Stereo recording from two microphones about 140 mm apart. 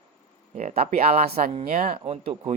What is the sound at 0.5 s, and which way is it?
Speech, 55° right (ahead or behind).